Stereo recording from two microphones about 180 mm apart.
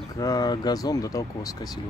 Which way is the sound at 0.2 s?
20° left (ahead or behind).